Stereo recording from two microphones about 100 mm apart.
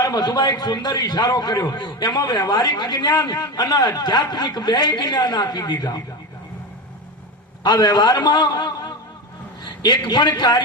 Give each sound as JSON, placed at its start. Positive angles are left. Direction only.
{"t": 0.0, "sound": "a man's voice", "side_deg": 45}
{"t": 7.6, "sound": "a man's voice", "side_deg": 45}